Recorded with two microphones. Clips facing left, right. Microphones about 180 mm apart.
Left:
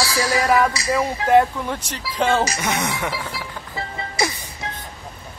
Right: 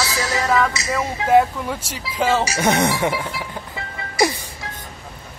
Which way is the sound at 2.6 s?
35° right (ahead or behind).